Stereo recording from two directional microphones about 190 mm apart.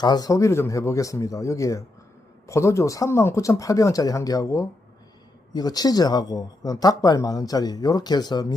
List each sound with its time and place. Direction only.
0.0 s speech: 20° left (ahead or behind)